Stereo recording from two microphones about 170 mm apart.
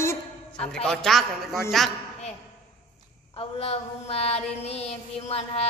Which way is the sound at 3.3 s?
35° left (ahead or behind).